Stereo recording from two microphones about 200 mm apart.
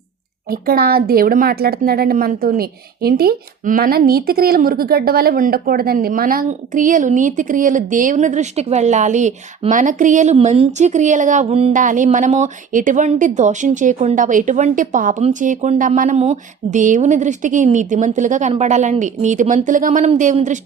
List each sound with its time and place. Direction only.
0.5 s speech: 50° right (ahead or behind)